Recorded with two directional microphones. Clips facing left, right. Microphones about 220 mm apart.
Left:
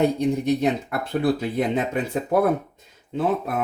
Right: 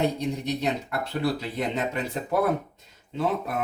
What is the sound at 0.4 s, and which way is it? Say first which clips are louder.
Speech: left 6 dB; 55° left (ahead or behind).